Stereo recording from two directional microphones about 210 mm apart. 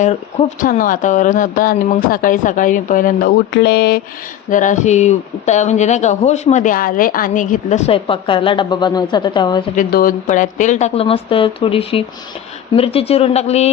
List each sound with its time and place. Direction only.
0.0 s speech: 35° left (ahead or behind)
4.4 s speech: 35° left (ahead or behind); by 9.6 s 20° left (ahead or behind)
9.7 s a woman's voice: 40° left (ahead or behind)